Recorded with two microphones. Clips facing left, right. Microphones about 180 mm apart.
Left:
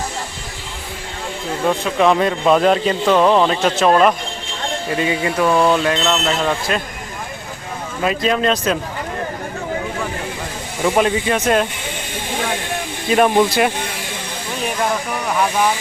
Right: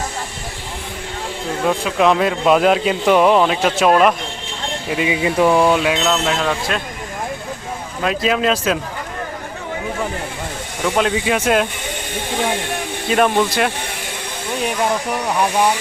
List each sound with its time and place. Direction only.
1.6 s speech: 5° right (ahead or behind)
8.0 s speech: centre (ahead or behind)
10.8 s speech: 10° left (ahead or behind)
11.1 s speech: 5° right (ahead or behind)
13.1 s speech: 5° left (ahead or behind)